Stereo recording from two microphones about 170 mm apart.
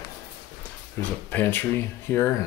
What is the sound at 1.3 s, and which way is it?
Speech, 10° left (ahead or behind).